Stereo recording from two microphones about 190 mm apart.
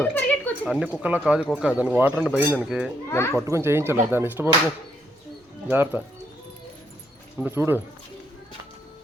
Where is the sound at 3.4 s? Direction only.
15° right (ahead or behind).